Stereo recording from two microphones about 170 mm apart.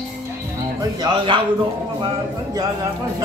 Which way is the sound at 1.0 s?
30° right (ahead or behind).